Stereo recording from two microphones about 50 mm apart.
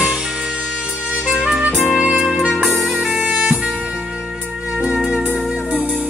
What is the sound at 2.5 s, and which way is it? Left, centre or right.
Music, centre.